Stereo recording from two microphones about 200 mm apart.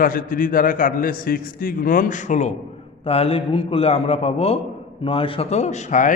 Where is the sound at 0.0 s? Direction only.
45° left (ahead or behind).